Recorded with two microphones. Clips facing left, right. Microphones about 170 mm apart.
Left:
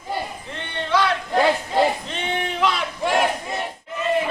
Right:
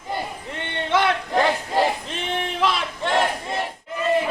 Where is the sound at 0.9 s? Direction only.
20° right (ahead or behind).